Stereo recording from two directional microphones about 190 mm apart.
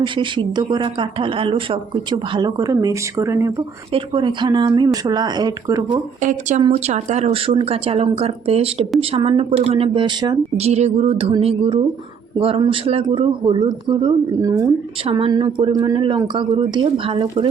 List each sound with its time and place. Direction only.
0.0 s speech: 25° right (ahead or behind)
6.6 s a woman's voice: 35° right (ahead or behind)